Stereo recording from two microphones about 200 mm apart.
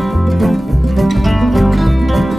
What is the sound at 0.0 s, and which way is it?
Music, centre (ahead or behind).